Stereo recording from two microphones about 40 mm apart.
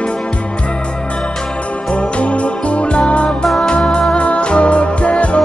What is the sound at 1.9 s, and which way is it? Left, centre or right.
Music, left.